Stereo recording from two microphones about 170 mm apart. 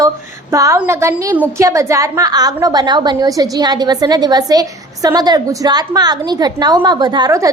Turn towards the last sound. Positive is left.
turn(degrees=-20)  # may be behind; listen again after turning